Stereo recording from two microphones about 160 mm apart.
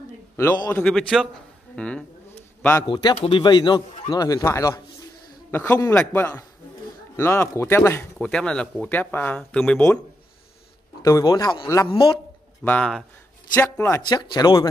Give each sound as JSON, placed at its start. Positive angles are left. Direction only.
{"t": 0.4, "sound": "speech", "side_deg": 15}
{"t": 0.8, "sound": "a man's voice", "side_deg": 0}
{"t": 2.9, "sound": "a man's voice", "side_deg": 25}
{"t": 11.0, "sound": "a man's voice", "side_deg": 20}
{"t": 12.6, "sound": "speech", "side_deg": 10}
{"t": 14.0, "sound": "a man's voice", "side_deg": 30}